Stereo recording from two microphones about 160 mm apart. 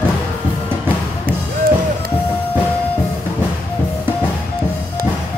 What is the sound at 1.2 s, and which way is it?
Music, 65° right (ahead or behind).